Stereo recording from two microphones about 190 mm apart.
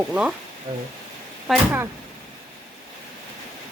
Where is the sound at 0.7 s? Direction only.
25° right (ahead or behind).